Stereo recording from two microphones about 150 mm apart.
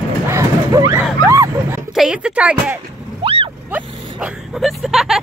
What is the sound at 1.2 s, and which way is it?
Dog, 20° right (ahead or behind).